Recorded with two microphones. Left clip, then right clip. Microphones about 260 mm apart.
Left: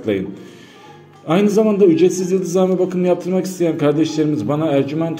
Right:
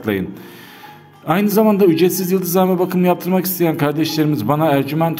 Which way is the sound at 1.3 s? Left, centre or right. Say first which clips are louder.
Even; right.